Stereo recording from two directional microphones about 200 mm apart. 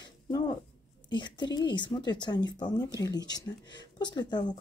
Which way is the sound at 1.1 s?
25° left (ahead or behind).